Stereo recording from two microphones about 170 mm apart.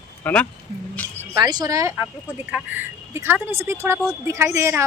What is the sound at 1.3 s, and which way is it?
Speech, 20° right (ahead or behind).